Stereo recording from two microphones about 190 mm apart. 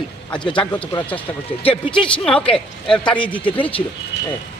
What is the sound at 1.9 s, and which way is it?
A man's voice, 5° left (ahead or behind).